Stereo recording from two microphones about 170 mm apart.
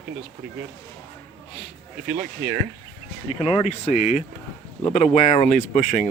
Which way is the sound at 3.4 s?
40° left (ahead or behind).